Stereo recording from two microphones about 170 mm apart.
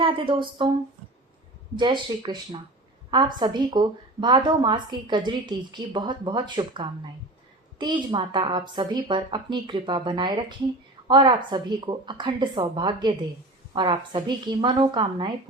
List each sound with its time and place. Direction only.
0.0 s speech: 30° right (ahead or behind)
1.7 s speech: 25° right (ahead or behind)